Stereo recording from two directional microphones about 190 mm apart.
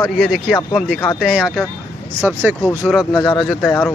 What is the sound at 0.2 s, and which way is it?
Speech, centre (ahead or behind).